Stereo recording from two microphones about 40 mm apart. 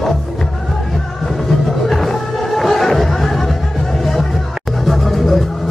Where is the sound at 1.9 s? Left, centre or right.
Centre.